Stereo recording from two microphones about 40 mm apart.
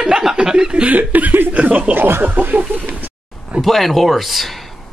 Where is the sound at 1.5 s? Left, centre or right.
Right.